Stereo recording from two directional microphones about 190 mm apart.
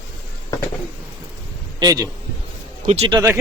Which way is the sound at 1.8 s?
20° right (ahead or behind).